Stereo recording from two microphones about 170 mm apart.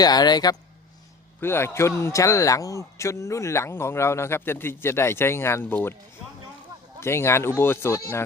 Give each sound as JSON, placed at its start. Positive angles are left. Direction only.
{"t": 0.0, "sound": "a man's voice", "side_deg": 25}
{"t": 7.0, "sound": "a man's voice", "side_deg": 15}